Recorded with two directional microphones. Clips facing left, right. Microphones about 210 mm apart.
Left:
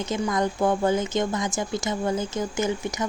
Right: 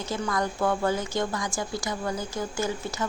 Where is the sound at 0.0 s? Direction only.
20° left (ahead or behind).